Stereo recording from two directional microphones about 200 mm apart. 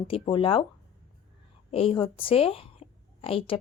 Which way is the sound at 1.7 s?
30° left (ahead or behind).